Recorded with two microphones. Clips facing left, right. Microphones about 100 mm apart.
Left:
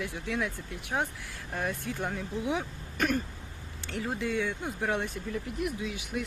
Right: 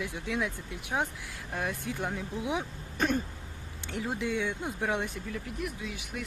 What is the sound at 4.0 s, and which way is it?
Speech, 15° right (ahead or behind).